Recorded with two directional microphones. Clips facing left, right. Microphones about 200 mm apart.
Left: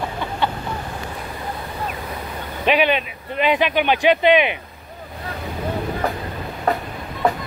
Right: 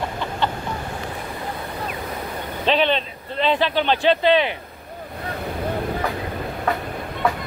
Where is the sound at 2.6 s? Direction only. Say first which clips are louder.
Left 2 dB; 10° left (ahead or behind).